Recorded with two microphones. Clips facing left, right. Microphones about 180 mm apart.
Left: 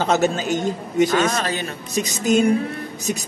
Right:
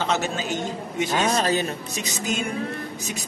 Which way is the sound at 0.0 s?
45° left (ahead or behind).